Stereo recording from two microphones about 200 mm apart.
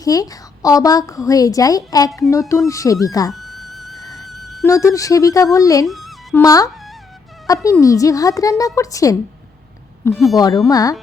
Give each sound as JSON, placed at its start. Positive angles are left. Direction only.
{"t": 0.0, "sound": "a woman's voice", "side_deg": 20}
{"t": 3.3, "sound": "music", "side_deg": 0}
{"t": 4.6, "sound": "a woman's voice", "side_deg": 15}
{"t": 5.8, "sound": "music", "side_deg": 0}
{"t": 6.3, "sound": "a woman's voice", "side_deg": 15}